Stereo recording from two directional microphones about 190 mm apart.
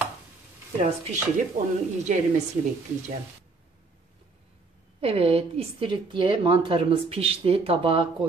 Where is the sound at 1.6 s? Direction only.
35° right (ahead or behind).